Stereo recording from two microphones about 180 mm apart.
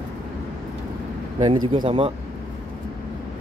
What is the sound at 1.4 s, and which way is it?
Speech, 30° right (ahead or behind).